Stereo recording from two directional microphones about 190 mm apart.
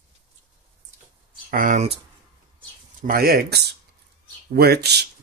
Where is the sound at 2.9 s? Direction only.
50° right (ahead or behind).